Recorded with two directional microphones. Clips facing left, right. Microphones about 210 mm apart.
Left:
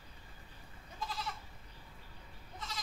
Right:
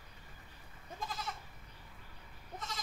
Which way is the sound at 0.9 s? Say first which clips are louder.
Even; 50° right (ahead or behind).